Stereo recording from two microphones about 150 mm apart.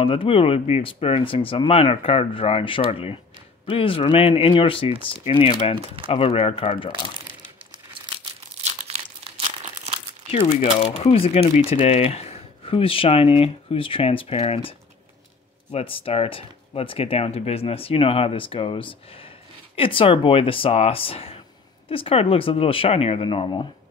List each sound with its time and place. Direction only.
0.0 s speech: 35° left (ahead or behind)
8.6 s crumpling: 45° right (ahead or behind)
10.3 s speech: 45° left (ahead or behind)